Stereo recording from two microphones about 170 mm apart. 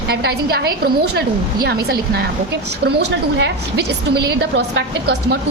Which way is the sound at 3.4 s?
85° right.